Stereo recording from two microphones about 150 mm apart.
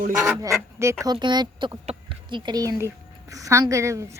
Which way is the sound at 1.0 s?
30° right (ahead or behind).